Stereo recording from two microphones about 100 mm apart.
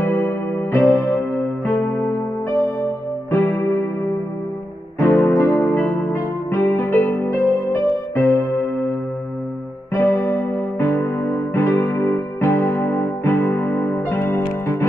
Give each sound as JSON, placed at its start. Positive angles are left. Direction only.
{"t": 0.0, "sound": "music", "side_deg": 25}
{"t": 3.3, "sound": "music", "side_deg": 25}
{"t": 4.9, "sound": "music", "side_deg": 25}
{"t": 9.9, "sound": "music", "side_deg": 25}